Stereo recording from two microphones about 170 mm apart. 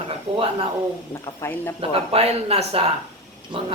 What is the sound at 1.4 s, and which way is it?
Speech, 10° left (ahead or behind).